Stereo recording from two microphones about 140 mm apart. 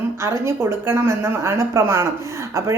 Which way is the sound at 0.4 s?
20° right (ahead or behind).